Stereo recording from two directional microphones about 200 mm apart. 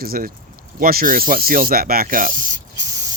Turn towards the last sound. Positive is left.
turn(degrees=-15)  # may be behind; listen again after turning